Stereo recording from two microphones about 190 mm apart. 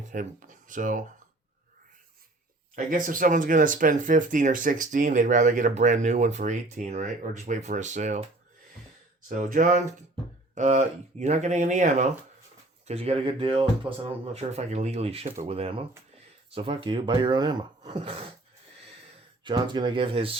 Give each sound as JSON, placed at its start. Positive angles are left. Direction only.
{"t": 0.1, "sound": "speech", "side_deg": -45}
{"t": 2.7, "sound": "speech", "side_deg": -45}
{"t": 9.3, "sound": "speech", "side_deg": -45}
{"t": 19.5, "sound": "speech", "side_deg": -25}